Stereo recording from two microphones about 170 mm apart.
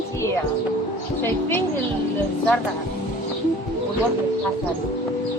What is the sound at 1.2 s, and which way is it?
Speech, 10° left (ahead or behind).